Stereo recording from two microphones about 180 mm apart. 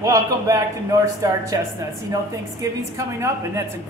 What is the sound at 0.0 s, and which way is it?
A woman's voice, 20° right (ahead or behind).